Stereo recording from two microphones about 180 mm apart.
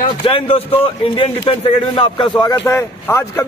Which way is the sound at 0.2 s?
30° left (ahead or behind).